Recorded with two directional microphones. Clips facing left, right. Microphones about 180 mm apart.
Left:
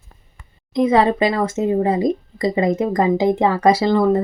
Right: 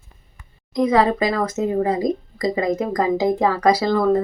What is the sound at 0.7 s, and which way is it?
Speech, 25° left (ahead or behind).